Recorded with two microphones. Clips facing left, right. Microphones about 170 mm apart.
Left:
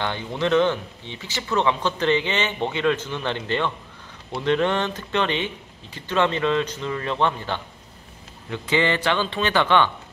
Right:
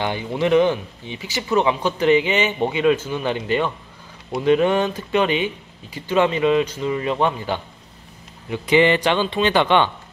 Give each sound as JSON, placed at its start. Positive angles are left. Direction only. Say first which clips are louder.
{"t": 0.0, "sound": "speech", "louder": "right 3 dB", "side_deg": -10}